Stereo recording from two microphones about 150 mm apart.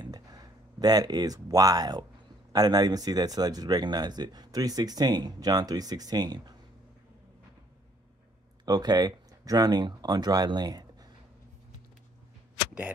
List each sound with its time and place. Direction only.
0.0 s a sound: 25° right (ahead or behind)
2.5 s speech: 25° right (ahead or behind)
8.6 s speech: 25° right (ahead or behind)